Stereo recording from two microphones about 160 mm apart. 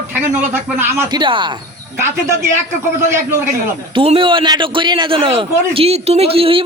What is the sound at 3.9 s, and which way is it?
A man's voice, 35° right (ahead or behind).